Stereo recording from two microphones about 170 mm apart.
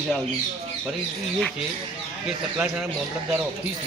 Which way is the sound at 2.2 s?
5° right (ahead or behind).